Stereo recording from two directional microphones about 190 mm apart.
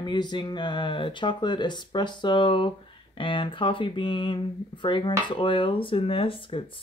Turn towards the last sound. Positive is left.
turn(degrees=25)  # may be behind; listen again after turning